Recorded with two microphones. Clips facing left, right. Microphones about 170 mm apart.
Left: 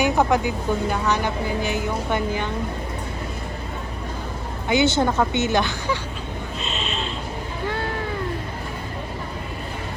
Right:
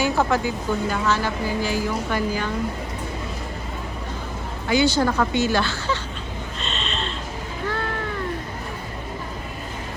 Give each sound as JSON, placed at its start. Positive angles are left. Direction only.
{"t": 0.0, "sound": "a woman's voice", "side_deg": 15}
{"t": 4.7, "sound": "a woman's voice", "side_deg": 20}
{"t": 6.6, "sound": "a sound", "side_deg": 0}